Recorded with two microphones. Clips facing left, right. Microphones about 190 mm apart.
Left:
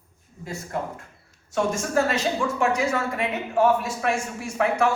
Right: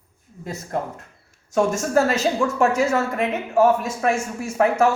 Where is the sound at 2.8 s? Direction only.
45° right (ahead or behind).